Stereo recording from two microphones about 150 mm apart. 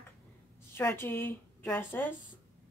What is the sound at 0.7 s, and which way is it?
A woman's voice, 15° left (ahead or behind).